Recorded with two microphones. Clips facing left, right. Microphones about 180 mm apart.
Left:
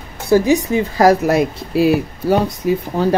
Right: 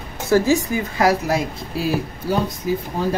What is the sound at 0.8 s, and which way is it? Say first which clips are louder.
Speech: left 6 dB; 40° left (ahead or behind).